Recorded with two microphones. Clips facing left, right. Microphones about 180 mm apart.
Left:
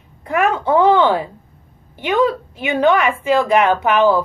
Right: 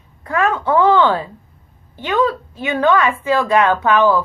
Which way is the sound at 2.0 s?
15° left (ahead or behind).